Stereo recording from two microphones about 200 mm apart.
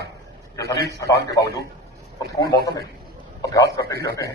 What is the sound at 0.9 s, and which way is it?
A man's voice, 15° left (ahead or behind).